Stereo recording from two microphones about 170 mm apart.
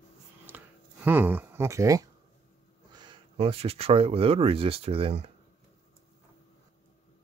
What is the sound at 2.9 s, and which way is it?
Speech, 25° right (ahead or behind).